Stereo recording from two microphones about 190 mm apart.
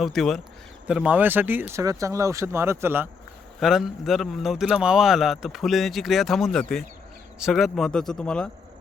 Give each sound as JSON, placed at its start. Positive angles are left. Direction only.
{"t": 0.0, "sound": "speech", "side_deg": 0}
{"t": 3.6, "sound": "speech", "side_deg": 0}